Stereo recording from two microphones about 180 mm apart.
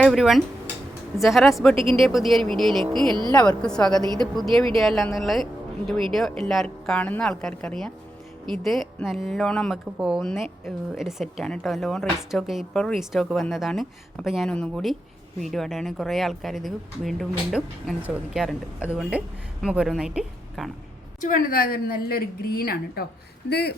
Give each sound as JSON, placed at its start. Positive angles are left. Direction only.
{"t": 0.0, "sound": "a woman's voice", "side_deg": 0}
{"t": 21.2, "sound": "a woman's voice", "side_deg": 50}